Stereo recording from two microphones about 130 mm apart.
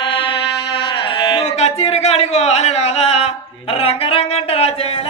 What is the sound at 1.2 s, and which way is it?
Speech, 45° left (ahead or behind).